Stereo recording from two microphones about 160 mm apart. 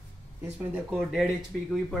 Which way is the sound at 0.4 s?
5° right (ahead or behind).